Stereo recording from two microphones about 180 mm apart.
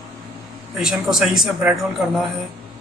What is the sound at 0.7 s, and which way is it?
Speech, 5° right (ahead or behind).